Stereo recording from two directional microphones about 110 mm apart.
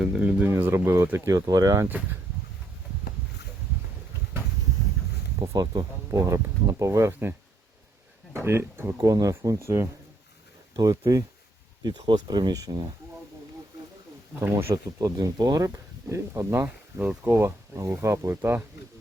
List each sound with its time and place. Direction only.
0.0 s speech: 10° right (ahead or behind); by 1.9 s 35° right (ahead or behind)
5.4 s speech: 35° right (ahead or behind)
14.3 s speech: 25° right (ahead or behind)